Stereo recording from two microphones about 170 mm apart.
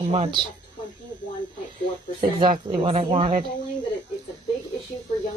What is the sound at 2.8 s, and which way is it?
Speech, 35° right (ahead or behind).